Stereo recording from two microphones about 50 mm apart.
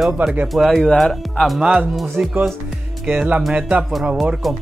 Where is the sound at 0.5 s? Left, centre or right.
Centre.